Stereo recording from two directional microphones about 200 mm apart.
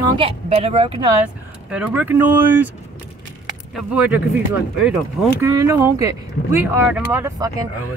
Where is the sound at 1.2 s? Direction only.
5° right (ahead or behind).